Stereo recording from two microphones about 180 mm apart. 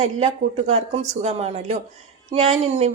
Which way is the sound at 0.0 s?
40° right (ahead or behind).